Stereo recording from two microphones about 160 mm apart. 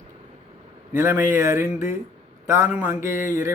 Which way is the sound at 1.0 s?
15° right (ahead or behind).